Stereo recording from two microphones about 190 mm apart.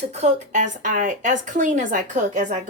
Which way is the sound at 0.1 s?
35° right (ahead or behind).